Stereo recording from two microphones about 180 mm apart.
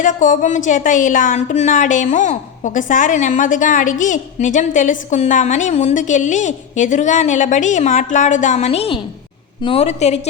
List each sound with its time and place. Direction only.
0.0 s a woman's voice: 45° left (ahead or behind)